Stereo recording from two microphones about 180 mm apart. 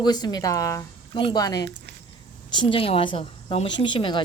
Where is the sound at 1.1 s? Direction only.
25° left (ahead or behind).